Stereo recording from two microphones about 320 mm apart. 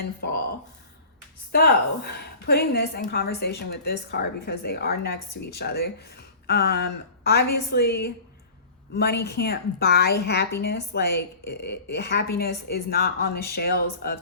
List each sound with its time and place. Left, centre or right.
0.0 s speech: left
2.1 s a woman's voice: left